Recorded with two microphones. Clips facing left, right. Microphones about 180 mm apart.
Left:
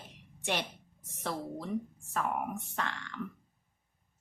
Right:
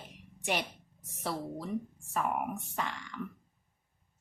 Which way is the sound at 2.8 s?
10° right (ahead or behind).